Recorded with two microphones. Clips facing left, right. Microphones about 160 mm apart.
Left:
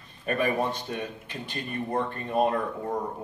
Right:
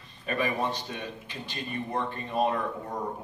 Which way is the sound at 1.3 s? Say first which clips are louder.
Even; 50° left (ahead or behind).